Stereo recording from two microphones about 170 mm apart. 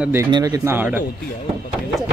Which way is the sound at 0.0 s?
15° right (ahead or behind).